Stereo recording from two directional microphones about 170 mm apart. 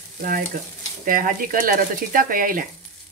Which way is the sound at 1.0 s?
55° right (ahead or behind).